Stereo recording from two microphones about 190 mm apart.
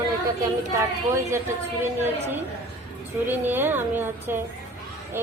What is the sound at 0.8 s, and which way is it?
A woman's voice, 15° right (ahead or behind).